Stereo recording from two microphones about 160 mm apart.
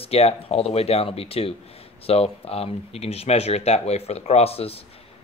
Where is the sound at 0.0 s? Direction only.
40° left (ahead or behind).